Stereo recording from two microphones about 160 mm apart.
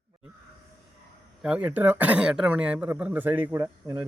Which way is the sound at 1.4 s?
10° right (ahead or behind).